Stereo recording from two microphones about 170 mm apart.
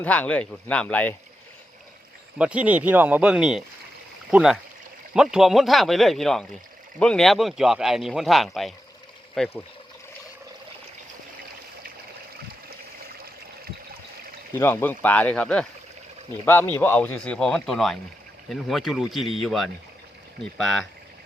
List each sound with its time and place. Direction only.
0.0 s a man's voice: 10° left (ahead or behind)
2.4 s speech: 5° right (ahead or behind)
13.1 s trickle: 65° right (ahead or behind)
14.5 s a man's voice: 10° left (ahead or behind)